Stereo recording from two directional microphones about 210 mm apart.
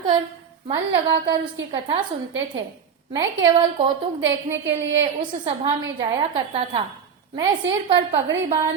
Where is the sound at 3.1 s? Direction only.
20° right (ahead or behind).